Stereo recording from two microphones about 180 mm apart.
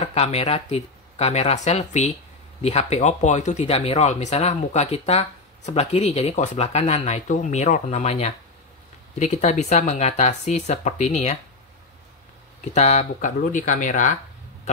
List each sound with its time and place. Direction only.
0.0 s speech: 35° left (ahead or behind)
12.7 s speech: 40° left (ahead or behind)